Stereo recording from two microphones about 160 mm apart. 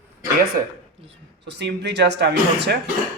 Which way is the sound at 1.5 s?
90° right.